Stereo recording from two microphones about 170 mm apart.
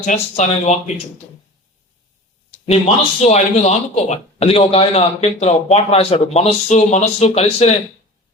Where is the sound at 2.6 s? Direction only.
40° left (ahead or behind).